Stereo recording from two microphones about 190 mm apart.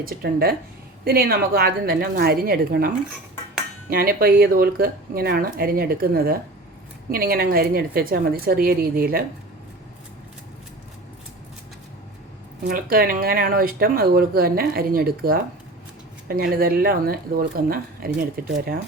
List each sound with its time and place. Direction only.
0.0 s speech: 50° right (ahead or behind)
12.6 s speech: 50° right (ahead or behind)